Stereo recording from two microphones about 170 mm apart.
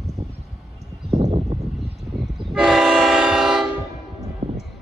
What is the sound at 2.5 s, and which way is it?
Train, 5° right (ahead or behind).